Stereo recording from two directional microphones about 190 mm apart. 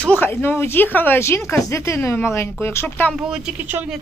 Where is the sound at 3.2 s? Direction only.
5° right (ahead or behind).